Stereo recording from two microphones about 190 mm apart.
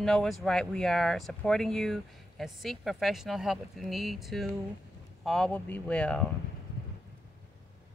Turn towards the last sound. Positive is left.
turn(degrees=5)  # may be behind; listen again after turning